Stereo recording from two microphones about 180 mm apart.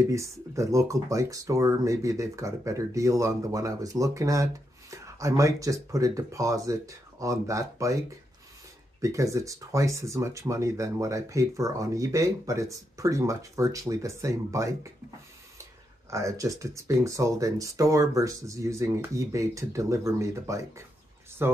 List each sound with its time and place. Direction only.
0.1 s speech: 15° right (ahead or behind)
9.0 s speech: 20° right (ahead or behind)
16.1 s speech: 15° right (ahead or behind)